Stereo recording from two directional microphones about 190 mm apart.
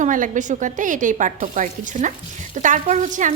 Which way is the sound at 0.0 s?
45° right (ahead or behind).